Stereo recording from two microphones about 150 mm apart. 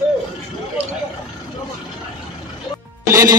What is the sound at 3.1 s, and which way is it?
Music, 20° right (ahead or behind).